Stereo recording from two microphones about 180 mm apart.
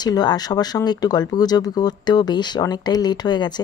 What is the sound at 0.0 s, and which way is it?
Speech, 25° left (ahead or behind).